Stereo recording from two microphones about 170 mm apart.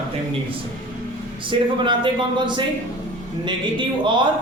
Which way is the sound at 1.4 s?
30° right (ahead or behind).